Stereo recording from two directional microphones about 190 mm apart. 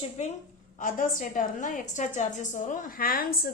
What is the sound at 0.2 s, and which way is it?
A woman's voice, 35° left (ahead or behind).